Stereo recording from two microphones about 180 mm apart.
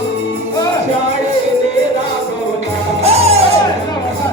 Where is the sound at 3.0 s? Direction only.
35° right (ahead or behind).